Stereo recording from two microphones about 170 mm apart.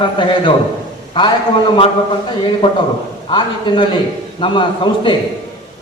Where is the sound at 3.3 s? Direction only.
30° left (ahead or behind).